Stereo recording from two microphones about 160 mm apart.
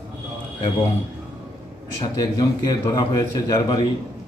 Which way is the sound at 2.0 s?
25° left (ahead or behind).